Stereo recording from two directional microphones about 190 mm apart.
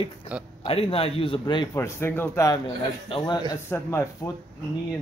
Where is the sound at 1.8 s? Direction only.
10° left (ahead or behind).